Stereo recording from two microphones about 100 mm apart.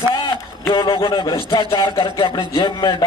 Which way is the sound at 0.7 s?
60° left (ahead or behind).